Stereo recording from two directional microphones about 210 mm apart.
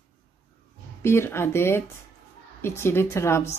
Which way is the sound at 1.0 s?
10° left (ahead or behind).